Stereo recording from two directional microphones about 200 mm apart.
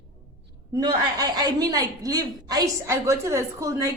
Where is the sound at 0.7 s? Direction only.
20° right (ahead or behind).